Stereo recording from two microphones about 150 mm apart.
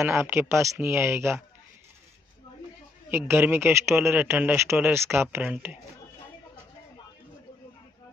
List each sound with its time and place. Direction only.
0.0 s speech: 15° right (ahead or behind)
3.1 s speech: 15° right (ahead or behind)